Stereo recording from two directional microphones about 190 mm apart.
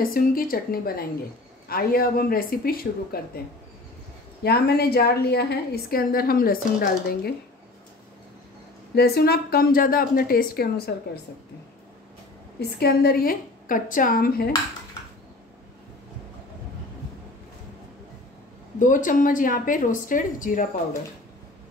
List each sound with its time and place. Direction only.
0.1 s a woman's voice: 50° left (ahead or behind)
4.4 s a woman's voice: 55° left (ahead or behind)
8.9 s a woman's voice: 55° left (ahead or behind)
12.5 s a woman's voice: 55° left (ahead or behind)
18.8 s a woman's voice: 45° left (ahead or behind)